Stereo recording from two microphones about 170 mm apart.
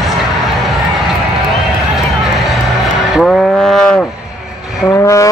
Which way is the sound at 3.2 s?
5° left (ahead or behind).